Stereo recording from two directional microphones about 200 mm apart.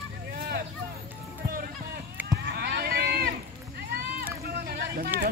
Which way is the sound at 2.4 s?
50° right (ahead or behind).